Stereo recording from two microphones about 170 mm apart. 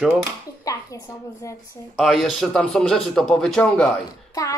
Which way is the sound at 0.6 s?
20° left (ahead or behind).